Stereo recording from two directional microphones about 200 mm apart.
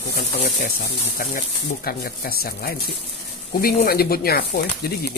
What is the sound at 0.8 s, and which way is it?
Speech, 45° left (ahead or behind).